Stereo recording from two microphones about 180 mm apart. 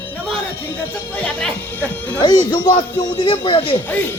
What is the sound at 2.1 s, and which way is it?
Speech, 25° left (ahead or behind).